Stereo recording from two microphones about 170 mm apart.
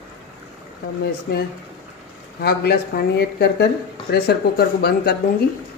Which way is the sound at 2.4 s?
65° left (ahead or behind).